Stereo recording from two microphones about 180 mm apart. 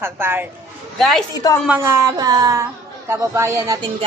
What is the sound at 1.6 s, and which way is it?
A man's voice, 10° right (ahead or behind).